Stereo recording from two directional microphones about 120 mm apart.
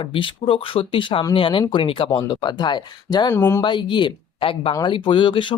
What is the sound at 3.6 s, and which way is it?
Speech, 40° left (ahead or behind).